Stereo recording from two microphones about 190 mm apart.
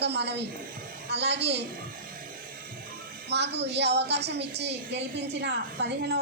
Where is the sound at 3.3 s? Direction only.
65° right (ahead or behind).